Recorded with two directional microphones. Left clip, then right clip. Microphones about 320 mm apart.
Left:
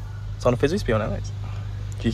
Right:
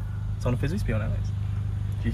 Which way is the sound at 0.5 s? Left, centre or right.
Centre.